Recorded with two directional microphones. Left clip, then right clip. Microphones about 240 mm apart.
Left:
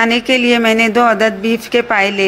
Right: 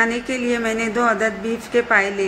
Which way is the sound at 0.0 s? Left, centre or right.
Left.